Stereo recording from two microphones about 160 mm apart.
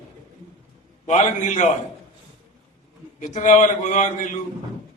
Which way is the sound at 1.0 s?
50° left (ahead or behind).